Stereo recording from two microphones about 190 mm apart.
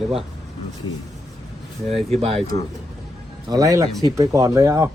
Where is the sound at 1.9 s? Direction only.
30° right (ahead or behind).